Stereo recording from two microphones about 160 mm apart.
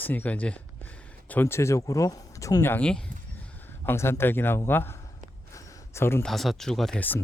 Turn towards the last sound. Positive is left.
turn(degrees=10)  # may be behind; listen again after turning